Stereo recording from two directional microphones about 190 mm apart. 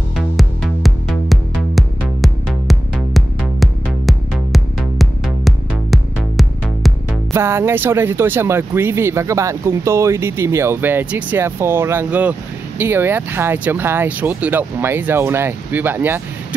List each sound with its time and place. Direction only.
0.4 s music: centre (ahead or behind)
7.3 s speech: 15° right (ahead or behind)